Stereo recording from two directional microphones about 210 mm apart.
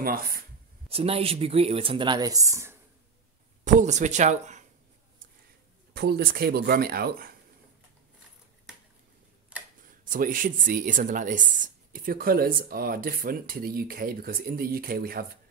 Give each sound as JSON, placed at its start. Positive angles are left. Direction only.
{"t": 0.0, "sound": "speech", "side_deg": -45}
{"t": 0.8, "sound": "speech", "side_deg": -30}
{"t": 3.6, "sound": "speech", "side_deg": -35}
{"t": 5.9, "sound": "speech", "side_deg": -50}
{"t": 9.8, "sound": "speech", "side_deg": -40}